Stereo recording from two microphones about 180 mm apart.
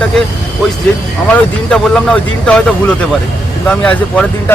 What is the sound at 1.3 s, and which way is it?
Speech, 5° left (ahead or behind).